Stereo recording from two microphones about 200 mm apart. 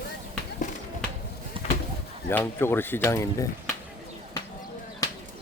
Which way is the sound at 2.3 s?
10° left (ahead or behind).